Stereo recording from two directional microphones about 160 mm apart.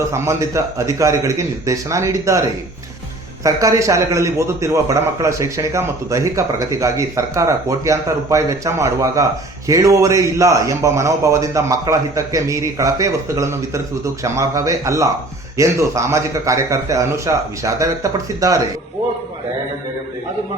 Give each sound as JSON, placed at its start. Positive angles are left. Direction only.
{"t": 0.1, "sound": "a man's voice", "side_deg": -20}